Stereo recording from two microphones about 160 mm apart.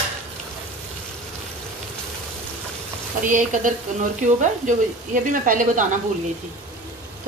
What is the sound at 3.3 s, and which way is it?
A woman's voice, 55° right (ahead or behind).